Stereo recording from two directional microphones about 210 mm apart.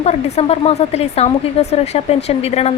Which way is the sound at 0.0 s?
30° left (ahead or behind).